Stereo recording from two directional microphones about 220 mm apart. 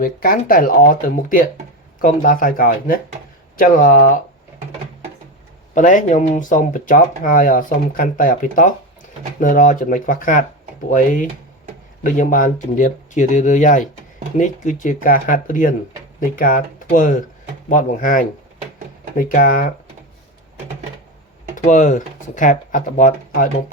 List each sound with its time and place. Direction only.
0.0 s speech: 40° left (ahead or behind)
5.7 s speech: 35° left (ahead or behind)
21.5 s speech: 35° left (ahead or behind)